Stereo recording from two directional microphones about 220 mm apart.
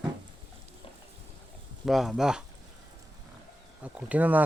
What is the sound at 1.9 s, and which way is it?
Speech, centre (ahead or behind).